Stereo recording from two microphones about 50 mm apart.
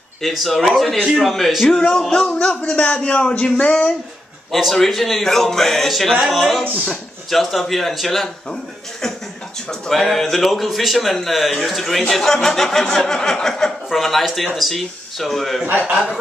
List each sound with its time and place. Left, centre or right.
0.2 s speech: centre
1.7 s speech: centre
4.5 s speech: centre
9.7 s speech: centre